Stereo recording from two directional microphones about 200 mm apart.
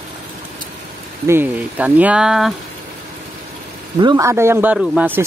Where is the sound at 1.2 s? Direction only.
10° right (ahead or behind).